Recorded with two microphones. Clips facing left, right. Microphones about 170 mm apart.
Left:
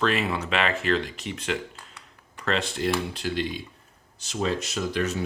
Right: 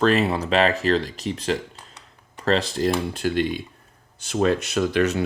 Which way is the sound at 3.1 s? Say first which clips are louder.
Right 6 dB; 50° right (ahead or behind).